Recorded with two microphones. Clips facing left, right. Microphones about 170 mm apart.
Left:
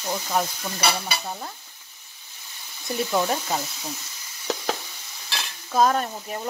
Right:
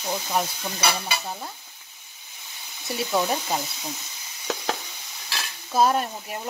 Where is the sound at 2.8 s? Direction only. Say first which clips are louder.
Left 1 dB; 5° right (ahead or behind).